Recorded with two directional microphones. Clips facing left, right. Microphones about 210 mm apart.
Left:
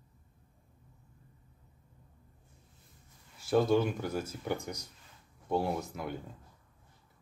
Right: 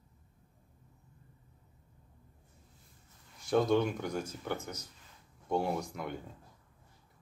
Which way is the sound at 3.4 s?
5° left (ahead or behind).